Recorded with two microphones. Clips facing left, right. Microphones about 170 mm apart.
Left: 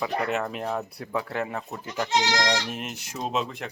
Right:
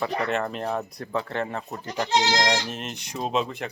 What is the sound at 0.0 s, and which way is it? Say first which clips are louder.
Speech: right 1 dB; 5° left (ahead or behind).